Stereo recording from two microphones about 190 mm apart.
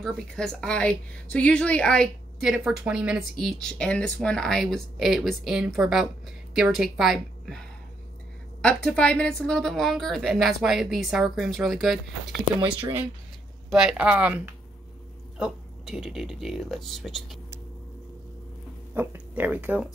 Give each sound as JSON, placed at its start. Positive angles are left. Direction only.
{"t": 0.0, "sound": "a woman's voice", "side_deg": 5}
{"t": 8.6, "sound": "a woman's voice", "side_deg": 5}
{"t": 13.7, "sound": "a woman's voice", "side_deg": -5}
{"t": 18.9, "sound": "speech", "side_deg": -10}